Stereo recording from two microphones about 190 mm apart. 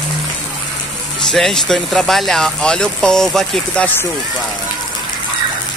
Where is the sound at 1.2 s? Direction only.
Centre (ahead or behind).